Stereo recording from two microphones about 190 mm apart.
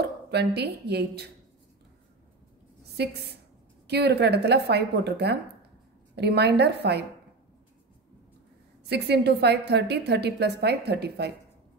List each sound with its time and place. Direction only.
0.0 s speech: 60° right (ahead or behind)
3.0 s a woman's voice: 60° right (ahead or behind)
8.8 s a woman's voice: 60° right (ahead or behind)